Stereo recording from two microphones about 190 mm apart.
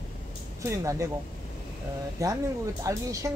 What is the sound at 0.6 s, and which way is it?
Speech, 15° right (ahead or behind).